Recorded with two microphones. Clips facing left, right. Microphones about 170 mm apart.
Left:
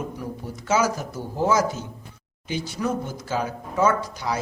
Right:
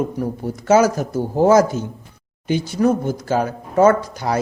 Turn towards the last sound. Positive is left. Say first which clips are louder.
# right 7 dB
turn(degrees=-55)  # may be behind; listen again after turning